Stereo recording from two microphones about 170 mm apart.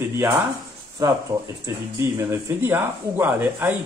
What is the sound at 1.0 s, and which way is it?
Speech, 20° right (ahead or behind).